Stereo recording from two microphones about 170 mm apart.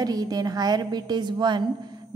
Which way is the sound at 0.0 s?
20° right (ahead or behind).